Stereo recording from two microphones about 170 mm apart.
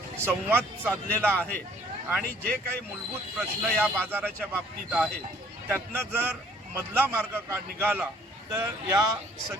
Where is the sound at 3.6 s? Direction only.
5° left (ahead or behind).